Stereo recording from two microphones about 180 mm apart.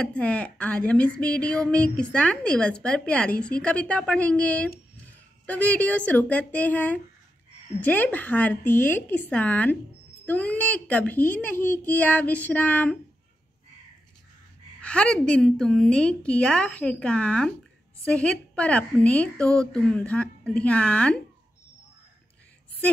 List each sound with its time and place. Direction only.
0.0 s a woman's voice: 5° left (ahead or behind)
14.8 s a woman's voice: 5° left (ahead or behind)